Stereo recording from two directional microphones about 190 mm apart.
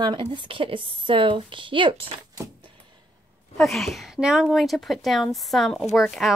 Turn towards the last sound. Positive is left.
turn(degrees=0)  # may be behind; listen again after turning